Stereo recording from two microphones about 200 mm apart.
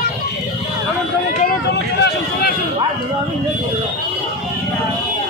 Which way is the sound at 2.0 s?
55° left (ahead or behind).